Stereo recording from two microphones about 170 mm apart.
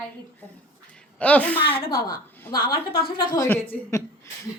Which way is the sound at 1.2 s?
10° left (ahead or behind).